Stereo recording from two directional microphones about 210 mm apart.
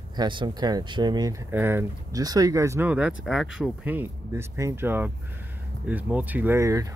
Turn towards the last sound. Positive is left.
turn(degrees=-15)  # may be behind; listen again after turning